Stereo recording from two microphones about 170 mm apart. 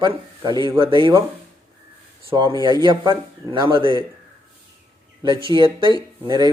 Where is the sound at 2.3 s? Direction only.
25° right (ahead or behind).